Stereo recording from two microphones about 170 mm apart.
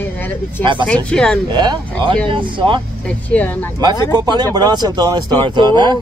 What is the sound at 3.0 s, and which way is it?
Speech, 5° left (ahead or behind).